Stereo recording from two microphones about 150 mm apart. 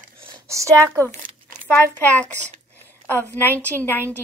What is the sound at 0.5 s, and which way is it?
Speech, 20° right (ahead or behind).